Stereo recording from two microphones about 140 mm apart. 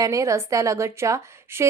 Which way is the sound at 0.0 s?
20° right (ahead or behind).